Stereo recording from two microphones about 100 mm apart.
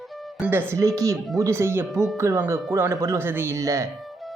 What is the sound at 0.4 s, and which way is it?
Speech, 20° right (ahead or behind).